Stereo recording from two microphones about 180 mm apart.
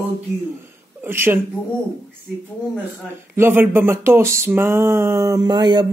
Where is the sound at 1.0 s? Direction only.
10° right (ahead or behind).